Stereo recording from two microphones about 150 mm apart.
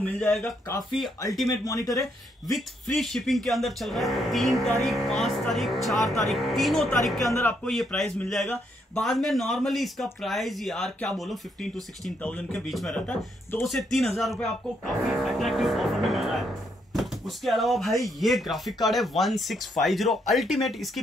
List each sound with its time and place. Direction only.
0.2 s a man's voice: 5° left (ahead or behind)
1.6 s speech: 20° left (ahead or behind)
2.5 s a man's voice: 5° left (ahead or behind)
7.2 s speech: 20° left (ahead or behind)
7.6 s a man's voice: 5° left (ahead or behind)
13.7 s a man's voice: centre (ahead or behind)